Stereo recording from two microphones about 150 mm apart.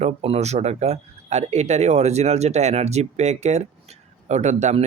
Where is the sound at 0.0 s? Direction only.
45° right (ahead or behind).